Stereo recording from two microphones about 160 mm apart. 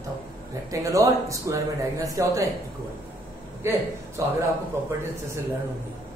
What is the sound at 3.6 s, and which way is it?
Speech, 15° right (ahead or behind).